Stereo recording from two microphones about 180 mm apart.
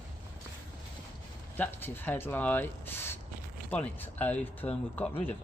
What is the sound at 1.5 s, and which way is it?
Speech, 10° left (ahead or behind).